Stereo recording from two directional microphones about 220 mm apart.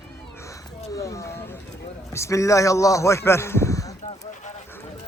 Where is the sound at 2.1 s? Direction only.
15° left (ahead or behind).